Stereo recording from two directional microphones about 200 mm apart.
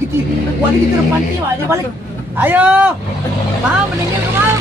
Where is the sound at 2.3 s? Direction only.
10° right (ahead or behind).